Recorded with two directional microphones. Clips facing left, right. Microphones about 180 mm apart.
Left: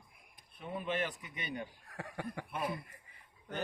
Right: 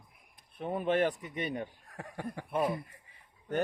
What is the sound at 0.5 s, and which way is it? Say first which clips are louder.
Speech: right 8 dB; 45° right (ahead or behind).